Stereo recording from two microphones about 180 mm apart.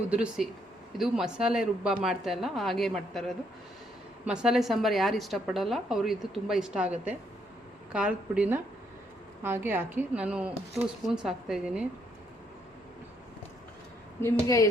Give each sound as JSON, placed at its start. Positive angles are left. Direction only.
{"t": 0.1, "sound": "a woman's voice", "side_deg": -5}
{"t": 14.2, "sound": "a woman's voice", "side_deg": 15}